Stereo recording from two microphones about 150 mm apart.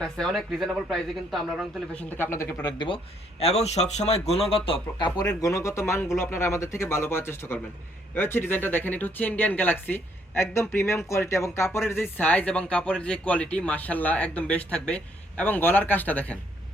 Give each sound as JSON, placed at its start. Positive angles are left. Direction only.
{"t": 0.0, "sound": "speech", "side_deg": 5}
{"t": 1.9, "sound": "speech", "side_deg": 10}
{"t": 2.7, "sound": "speech", "side_deg": 35}
{"t": 3.4, "sound": "speech", "side_deg": 45}